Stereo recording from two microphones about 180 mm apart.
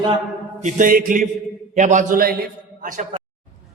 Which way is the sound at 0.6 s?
50° right (ahead or behind).